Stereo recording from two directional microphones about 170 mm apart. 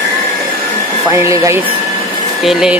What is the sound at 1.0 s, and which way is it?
Speech, 15° right (ahead or behind).